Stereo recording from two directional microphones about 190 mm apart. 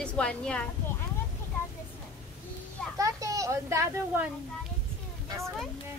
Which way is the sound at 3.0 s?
20° right (ahead or behind).